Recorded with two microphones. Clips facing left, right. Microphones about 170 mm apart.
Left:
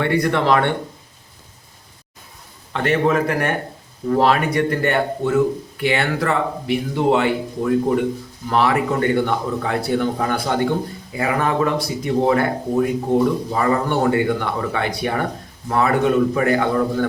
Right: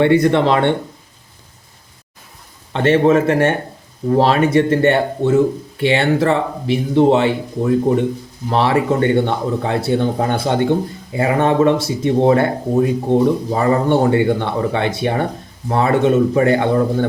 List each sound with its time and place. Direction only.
0.0 s a man's voice: 20° right (ahead or behind)
2.7 s a man's voice: 25° right (ahead or behind)